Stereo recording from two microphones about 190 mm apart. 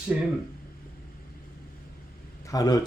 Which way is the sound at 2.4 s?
20° left (ahead or behind).